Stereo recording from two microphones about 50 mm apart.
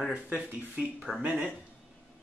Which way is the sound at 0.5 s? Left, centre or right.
Right.